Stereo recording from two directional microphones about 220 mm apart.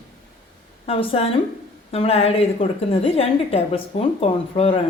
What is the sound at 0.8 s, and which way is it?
A woman's voice, 25° left (ahead or behind).